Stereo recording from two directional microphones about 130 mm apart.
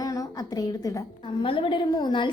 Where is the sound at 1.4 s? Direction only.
40° left (ahead or behind).